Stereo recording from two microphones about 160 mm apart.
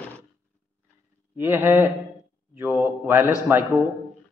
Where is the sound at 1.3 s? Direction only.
15° right (ahead or behind).